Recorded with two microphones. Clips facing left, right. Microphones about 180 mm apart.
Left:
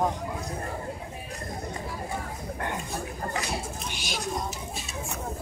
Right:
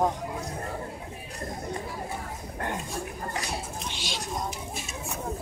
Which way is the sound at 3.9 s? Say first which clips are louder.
Left 1 dB; 25° right (ahead or behind).